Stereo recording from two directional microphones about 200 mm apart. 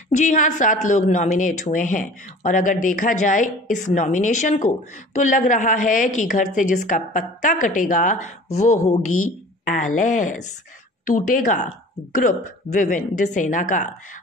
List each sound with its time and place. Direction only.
0.1 s speech: 40° left (ahead or behind)